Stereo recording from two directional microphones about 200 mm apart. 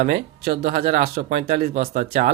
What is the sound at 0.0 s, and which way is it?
Speech, 45° right (ahead or behind).